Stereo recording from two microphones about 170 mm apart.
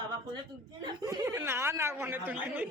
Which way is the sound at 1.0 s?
15° right (ahead or behind).